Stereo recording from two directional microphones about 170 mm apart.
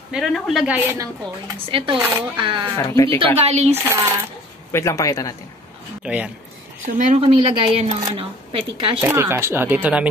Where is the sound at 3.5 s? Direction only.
40° right (ahead or behind).